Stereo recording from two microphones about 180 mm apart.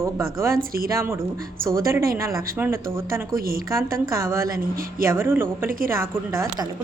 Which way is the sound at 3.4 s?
55° right (ahead or behind).